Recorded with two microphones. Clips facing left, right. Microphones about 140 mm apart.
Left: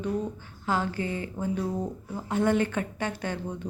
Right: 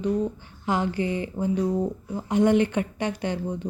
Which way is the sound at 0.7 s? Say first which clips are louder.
Right 4 dB; 15° right (ahead or behind).